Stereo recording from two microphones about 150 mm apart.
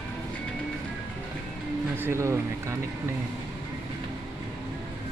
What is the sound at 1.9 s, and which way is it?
Speech, 15° right (ahead or behind).